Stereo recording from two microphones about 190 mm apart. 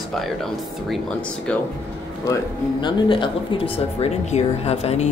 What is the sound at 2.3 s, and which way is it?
Speech, 25° left (ahead or behind).